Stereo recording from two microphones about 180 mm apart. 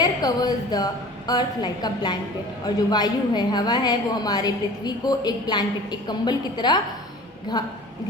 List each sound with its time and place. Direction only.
0.0 s a woman's voice: 20° left (ahead or behind)